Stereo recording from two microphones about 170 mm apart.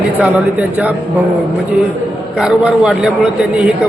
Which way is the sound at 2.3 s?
5° right (ahead or behind).